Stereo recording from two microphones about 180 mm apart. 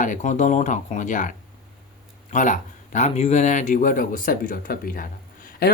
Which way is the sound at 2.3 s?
45° left (ahead or behind).